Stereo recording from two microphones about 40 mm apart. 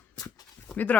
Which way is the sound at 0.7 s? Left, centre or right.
Left.